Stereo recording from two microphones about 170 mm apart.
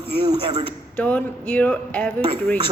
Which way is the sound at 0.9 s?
10° left (ahead or behind).